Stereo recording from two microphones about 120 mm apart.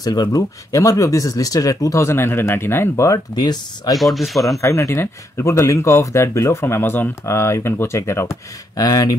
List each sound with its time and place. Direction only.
0.0 s speech: 30° left (ahead or behind)
3.9 s speech: centre (ahead or behind)
4.6 s speech: 20° left (ahead or behind)